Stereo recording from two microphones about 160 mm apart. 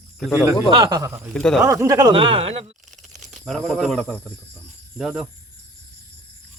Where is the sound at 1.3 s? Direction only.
5° left (ahead or behind).